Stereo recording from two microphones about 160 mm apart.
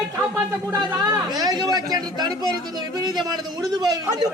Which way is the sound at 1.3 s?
25° right (ahead or behind).